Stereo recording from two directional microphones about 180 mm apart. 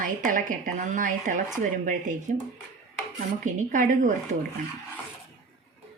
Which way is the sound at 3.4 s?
45° right (ahead or behind).